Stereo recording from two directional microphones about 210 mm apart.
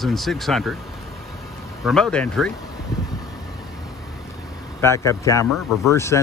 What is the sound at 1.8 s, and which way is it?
Speech, centre (ahead or behind).